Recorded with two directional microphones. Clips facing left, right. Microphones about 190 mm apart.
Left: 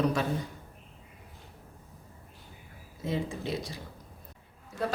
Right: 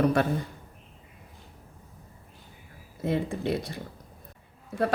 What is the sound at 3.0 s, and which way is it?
Speech, 60° right (ahead or behind).